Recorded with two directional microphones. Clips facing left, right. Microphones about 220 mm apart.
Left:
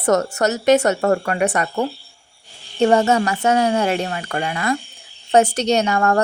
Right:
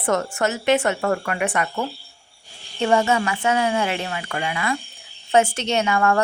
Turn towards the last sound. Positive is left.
turn(degrees=40)  # may be behind; listen again after turning